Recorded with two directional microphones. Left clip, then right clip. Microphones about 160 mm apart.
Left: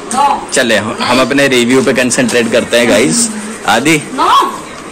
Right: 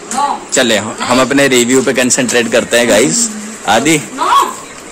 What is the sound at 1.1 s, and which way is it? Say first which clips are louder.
A man's voice: even; 25° right (ahead or behind).